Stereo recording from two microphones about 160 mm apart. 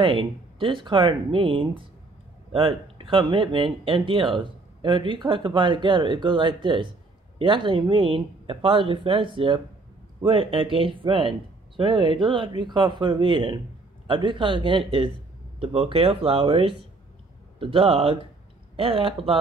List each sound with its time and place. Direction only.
0.0 s speech: 30° right (ahead or behind)